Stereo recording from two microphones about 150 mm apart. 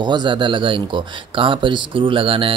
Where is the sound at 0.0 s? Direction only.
30° right (ahead or behind).